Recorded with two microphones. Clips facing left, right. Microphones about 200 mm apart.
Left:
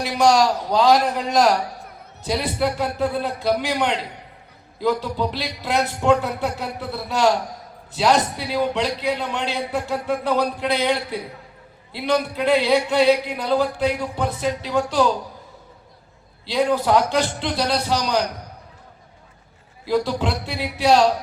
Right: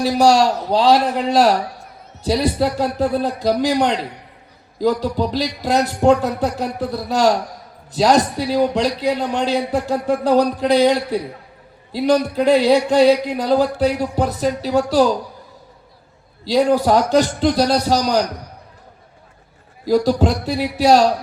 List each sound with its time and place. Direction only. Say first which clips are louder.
0.0 s a man's voice: right 3 dB; 35° right (ahead or behind)
16.4 s a man's voice: right 5 dB; 40° right (ahead or behind)
19.8 s a man's voice: right 6 dB; 40° right (ahead or behind)